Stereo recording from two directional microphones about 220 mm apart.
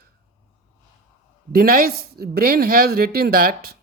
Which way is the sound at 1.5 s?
40° right (ahead or behind).